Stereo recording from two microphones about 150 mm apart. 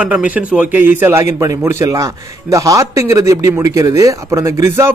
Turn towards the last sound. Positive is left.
turn(degrees=-15)  # may be behind; listen again after turning